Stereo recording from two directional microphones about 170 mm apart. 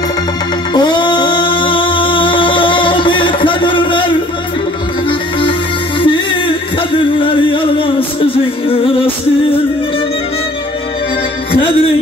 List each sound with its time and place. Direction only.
0.7 s singing: 25° left (ahead or behind)
5.9 s music: 30° left (ahead or behind)